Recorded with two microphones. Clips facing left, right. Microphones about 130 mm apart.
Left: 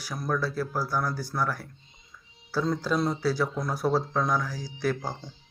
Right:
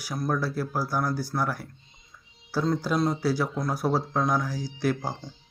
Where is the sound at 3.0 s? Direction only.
5° right (ahead or behind).